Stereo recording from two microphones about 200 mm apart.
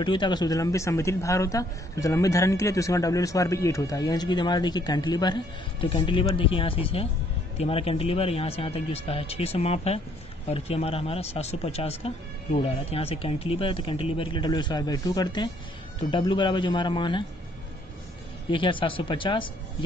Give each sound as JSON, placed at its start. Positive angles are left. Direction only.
{"t": 0.0, "sound": "a man's voice", "side_deg": 25}
{"t": 18.5, "sound": "speech", "side_deg": 25}